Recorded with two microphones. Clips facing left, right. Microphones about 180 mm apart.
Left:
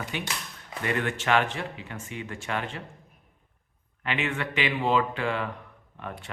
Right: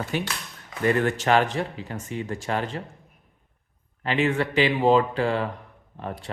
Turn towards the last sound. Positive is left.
turn(degrees=-35)  # may be behind; listen again after turning